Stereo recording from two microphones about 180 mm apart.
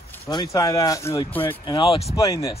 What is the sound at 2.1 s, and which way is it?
Speech, 20° left (ahead or behind).